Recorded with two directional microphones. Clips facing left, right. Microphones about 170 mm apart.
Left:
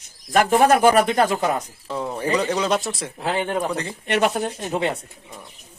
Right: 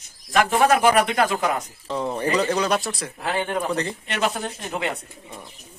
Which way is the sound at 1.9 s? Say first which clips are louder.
Even; 5° left (ahead or behind).